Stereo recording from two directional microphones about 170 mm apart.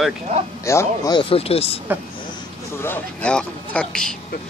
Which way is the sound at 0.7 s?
20° left (ahead or behind).